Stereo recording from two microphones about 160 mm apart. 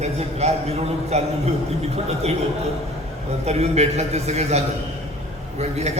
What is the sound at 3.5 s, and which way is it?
A man's voice, 40° right (ahead or behind).